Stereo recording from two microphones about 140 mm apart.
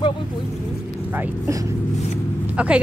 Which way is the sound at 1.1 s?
20° right (ahead or behind).